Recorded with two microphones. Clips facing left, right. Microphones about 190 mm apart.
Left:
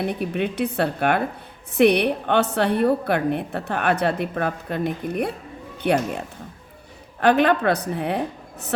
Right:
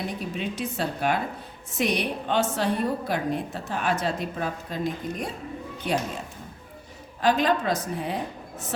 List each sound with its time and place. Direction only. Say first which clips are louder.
0.0 s a woman's voice: left 7 dB; 60° left (ahead or behind)